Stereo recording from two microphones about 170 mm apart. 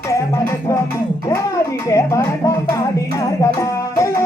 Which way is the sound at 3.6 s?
15° left (ahead or behind).